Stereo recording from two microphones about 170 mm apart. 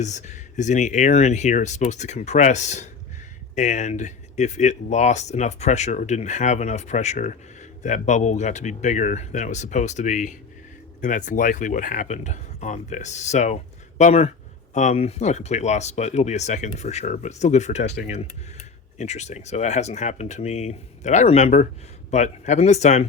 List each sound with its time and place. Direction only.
0.0 s speech: 45° left (ahead or behind)
18.9 s speech: 40° left (ahead or behind)